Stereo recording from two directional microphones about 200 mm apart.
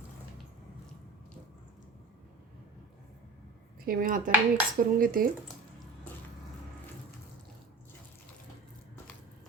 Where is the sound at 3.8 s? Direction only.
45° right (ahead or behind).